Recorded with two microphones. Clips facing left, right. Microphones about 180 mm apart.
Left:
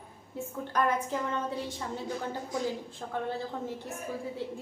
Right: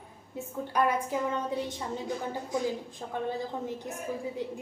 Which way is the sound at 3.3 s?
15° right (ahead or behind).